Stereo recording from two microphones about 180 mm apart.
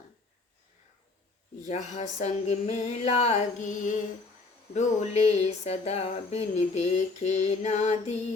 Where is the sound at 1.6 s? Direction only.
40° left (ahead or behind).